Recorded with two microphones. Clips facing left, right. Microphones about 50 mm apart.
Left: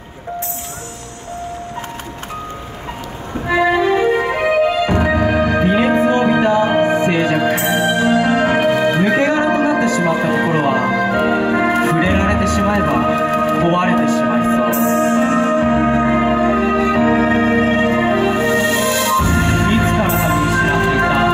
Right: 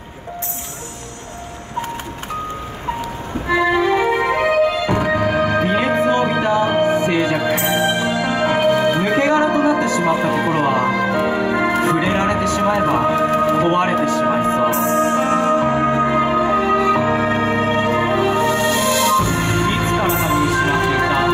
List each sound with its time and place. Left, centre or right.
3.4 s music: centre
4.3 s music: centre
7.5 s music: centre
11.1 s music: centre